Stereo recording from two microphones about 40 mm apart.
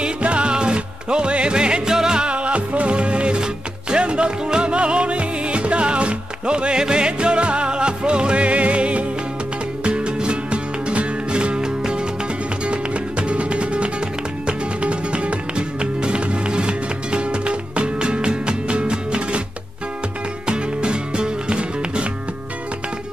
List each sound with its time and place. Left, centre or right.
0.0 s music: right
2.3 s music: right
20.4 s music: right